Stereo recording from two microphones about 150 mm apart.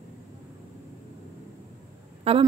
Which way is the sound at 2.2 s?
40° right (ahead or behind).